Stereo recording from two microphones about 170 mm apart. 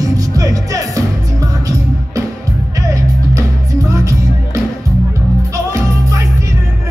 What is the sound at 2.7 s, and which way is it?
Music, 20° right (ahead or behind).